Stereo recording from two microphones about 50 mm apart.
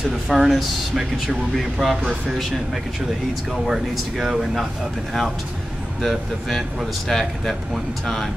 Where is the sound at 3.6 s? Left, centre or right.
Centre.